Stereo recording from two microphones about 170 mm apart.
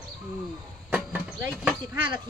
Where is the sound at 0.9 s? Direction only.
10° right (ahead or behind).